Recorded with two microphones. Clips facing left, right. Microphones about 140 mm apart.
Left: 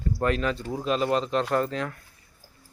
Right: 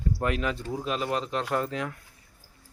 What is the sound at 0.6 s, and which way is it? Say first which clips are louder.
Speech: left 4 dB; centre (ahead or behind).